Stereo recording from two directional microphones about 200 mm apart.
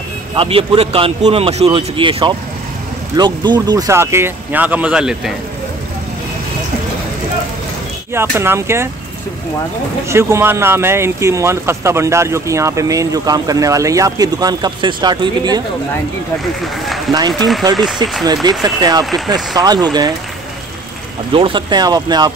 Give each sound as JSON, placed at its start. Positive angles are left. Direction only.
{"t": 0.4, "sound": "a man's voice", "side_deg": -30}
{"t": 8.1, "sound": "speech", "side_deg": -10}
{"t": 10.0, "sound": "speech", "side_deg": -15}
{"t": 18.2, "sound": "a man's voice", "side_deg": -20}
{"t": 19.0, "sound": "speech", "side_deg": 0}
{"t": 19.3, "sound": "a man's voice", "side_deg": -20}
{"t": 21.3, "sound": "a man's voice", "side_deg": -25}